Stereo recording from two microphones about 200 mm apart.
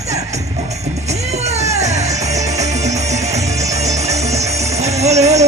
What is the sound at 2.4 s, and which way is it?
Music, 35° right (ahead or behind).